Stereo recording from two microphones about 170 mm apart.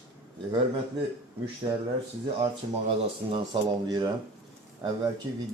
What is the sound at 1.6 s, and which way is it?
Speech, 30° right (ahead or behind).